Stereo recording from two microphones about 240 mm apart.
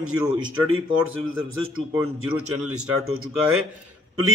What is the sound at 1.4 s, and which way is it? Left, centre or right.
Speech, right.